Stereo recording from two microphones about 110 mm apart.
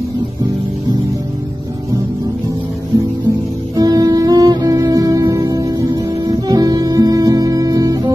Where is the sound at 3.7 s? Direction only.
35° right (ahead or behind).